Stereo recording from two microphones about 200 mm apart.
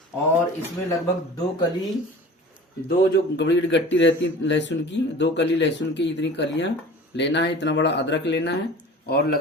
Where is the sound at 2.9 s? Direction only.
55° left (ahead or behind).